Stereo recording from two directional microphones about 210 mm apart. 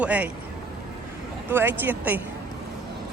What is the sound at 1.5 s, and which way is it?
Speech, 10° right (ahead or behind).